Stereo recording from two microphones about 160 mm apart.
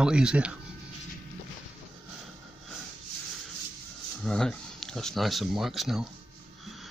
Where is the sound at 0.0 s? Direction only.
5° right (ahead or behind).